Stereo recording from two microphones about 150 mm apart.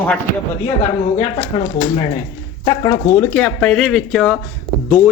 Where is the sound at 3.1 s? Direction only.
10° left (ahead or behind).